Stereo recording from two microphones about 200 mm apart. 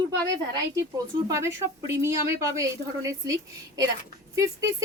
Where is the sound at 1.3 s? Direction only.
15° right (ahead or behind).